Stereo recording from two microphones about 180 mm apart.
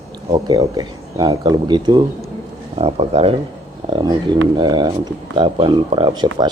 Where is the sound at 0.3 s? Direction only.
20° right (ahead or behind).